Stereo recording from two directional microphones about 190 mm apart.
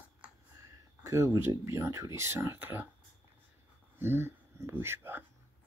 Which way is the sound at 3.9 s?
10° right (ahead or behind).